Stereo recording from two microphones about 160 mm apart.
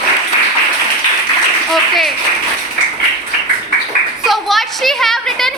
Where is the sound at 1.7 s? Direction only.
Centre (ahead or behind).